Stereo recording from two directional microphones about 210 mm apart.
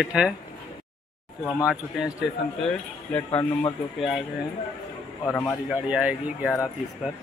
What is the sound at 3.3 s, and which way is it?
Speech, 25° left (ahead or behind).